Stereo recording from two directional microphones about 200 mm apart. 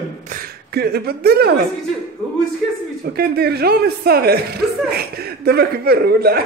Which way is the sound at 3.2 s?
50° right (ahead or behind).